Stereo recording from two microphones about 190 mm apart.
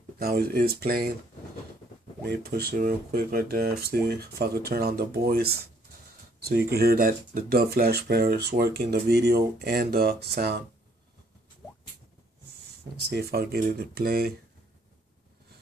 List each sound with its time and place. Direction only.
0.2 s speech: 55° right (ahead or behind)
2.5 s speech: 50° right (ahead or behind)
13.1 s speech: 55° right (ahead or behind)